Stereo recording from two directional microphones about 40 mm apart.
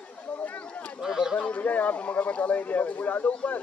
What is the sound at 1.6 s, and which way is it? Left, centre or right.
Speech, left.